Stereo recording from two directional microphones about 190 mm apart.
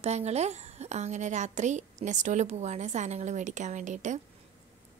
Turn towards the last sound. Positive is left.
turn(degrees=-40)  # may be behind; listen again after turning